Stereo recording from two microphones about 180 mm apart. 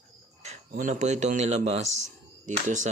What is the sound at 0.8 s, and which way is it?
Speech, 45° right (ahead or behind).